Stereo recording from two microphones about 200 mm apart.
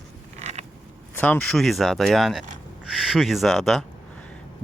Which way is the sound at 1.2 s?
5° left (ahead or behind).